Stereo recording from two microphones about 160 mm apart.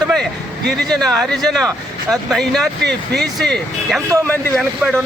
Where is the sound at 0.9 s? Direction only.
5° left (ahead or behind).